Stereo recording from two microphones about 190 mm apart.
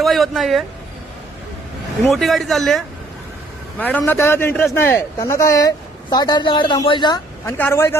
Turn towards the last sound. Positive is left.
turn(degrees=15)  # may be behind; listen again after turning